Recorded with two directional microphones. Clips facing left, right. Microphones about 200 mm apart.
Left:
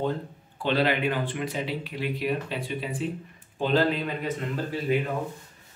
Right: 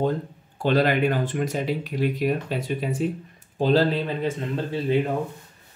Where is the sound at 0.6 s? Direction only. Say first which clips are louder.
Right 4 dB; 45° right (ahead or behind).